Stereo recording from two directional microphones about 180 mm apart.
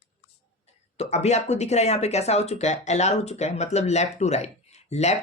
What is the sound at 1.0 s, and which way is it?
Speech, 40° left (ahead or behind).